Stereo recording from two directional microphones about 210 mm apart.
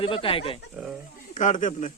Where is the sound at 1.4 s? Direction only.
35° left (ahead or behind).